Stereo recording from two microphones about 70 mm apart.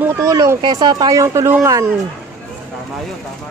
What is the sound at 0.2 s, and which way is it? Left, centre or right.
Speech, right.